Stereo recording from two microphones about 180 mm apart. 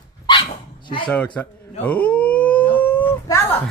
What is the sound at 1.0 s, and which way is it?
Speech, 5° left (ahead or behind).